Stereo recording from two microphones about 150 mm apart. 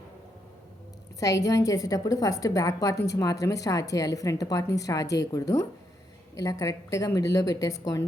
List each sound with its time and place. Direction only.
1.2 s a woman's voice: 20° left (ahead or behind)